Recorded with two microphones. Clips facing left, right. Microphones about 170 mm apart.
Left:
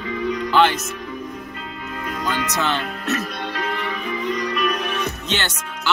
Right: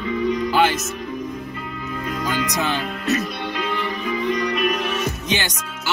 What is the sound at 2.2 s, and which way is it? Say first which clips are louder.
Speech: left 1 dB; 10° right (ahead or behind).